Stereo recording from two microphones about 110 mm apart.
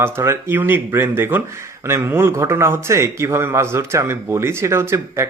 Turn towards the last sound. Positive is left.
turn(degrees=-25)  # may be behind; listen again after turning